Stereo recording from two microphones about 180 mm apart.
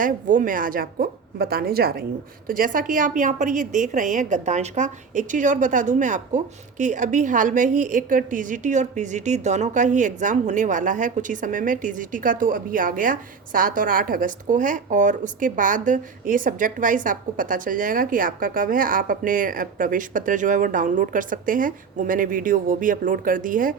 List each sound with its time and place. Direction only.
0.0 s a woman's voice: 45° right (ahead or behind)